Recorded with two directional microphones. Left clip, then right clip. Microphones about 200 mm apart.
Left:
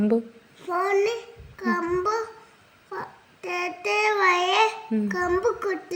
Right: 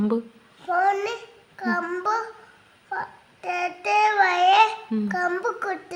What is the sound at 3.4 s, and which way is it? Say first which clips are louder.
Child singing: right 2 dB; 15° right (ahead or behind).